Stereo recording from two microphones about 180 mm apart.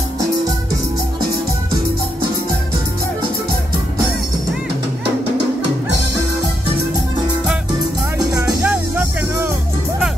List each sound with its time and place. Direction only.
8.6 s music: 10° right (ahead or behind)